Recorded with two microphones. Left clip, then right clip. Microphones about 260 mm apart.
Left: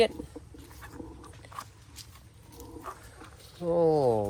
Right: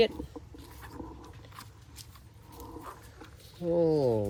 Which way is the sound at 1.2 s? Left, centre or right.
Centre.